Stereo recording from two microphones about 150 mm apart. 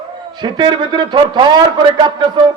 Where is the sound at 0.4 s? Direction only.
30° right (ahead or behind).